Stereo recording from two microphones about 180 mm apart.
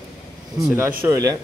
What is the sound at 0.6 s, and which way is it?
Speech, 10° right (ahead or behind).